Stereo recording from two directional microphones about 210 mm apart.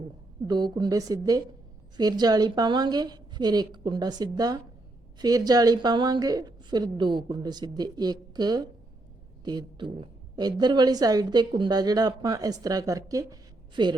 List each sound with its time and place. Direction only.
0.4 s a woman's voice: 20° right (ahead or behind)